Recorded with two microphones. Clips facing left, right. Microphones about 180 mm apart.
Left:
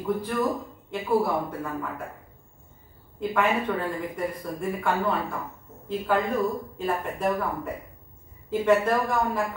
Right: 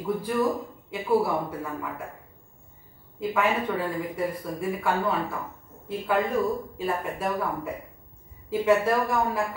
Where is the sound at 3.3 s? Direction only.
5° right (ahead or behind).